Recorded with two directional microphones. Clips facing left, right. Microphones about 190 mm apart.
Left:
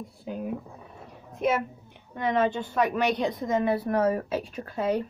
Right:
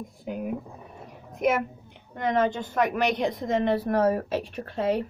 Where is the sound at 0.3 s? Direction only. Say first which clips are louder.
Right 1 dB; 10° right (ahead or behind).